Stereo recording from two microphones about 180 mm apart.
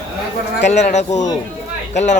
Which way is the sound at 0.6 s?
40° left (ahead or behind).